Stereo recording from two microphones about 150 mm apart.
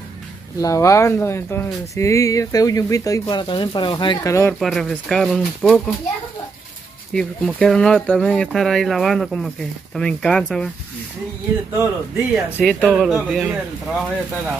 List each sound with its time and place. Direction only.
0.6 s speech: 20° left (ahead or behind)
4.6 s speech: centre (ahead or behind)
7.2 s speech: 5° left (ahead or behind)
11.7 s speech: 15° right (ahead or behind)
12.6 s speech: centre (ahead or behind)